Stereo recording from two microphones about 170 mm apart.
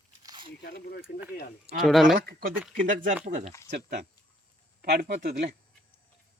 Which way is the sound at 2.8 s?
50° right (ahead or behind).